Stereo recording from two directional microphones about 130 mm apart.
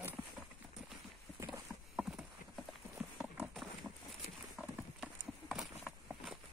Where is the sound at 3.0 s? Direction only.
10° right (ahead or behind).